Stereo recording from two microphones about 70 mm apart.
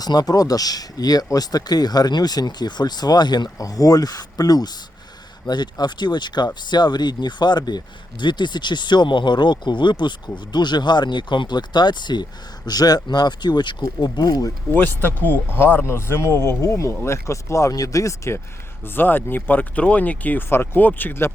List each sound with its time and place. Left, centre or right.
0.0 s speech: left
3.6 s speech: left
5.5 s speech: left
12.6 s speech: left
14.0 s speech: left
14.8 s speech: left
18.9 s speech: left